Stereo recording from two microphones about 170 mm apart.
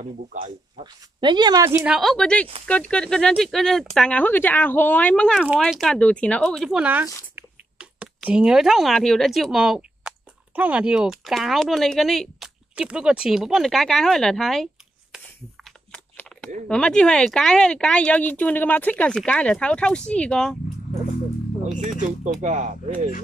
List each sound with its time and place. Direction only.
0.0 s speech: 45° right (ahead or behind)
1.2 s a woman's voice: 25° right (ahead or behind)
1.9 s speech: centre (ahead or behind)
16.6 s speech: 5° left (ahead or behind)
22.2 s speech: 45° right (ahead or behind)